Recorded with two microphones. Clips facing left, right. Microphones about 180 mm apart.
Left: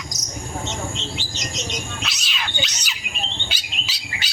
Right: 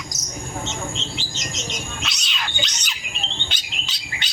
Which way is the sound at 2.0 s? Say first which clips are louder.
Even; centre (ahead or behind).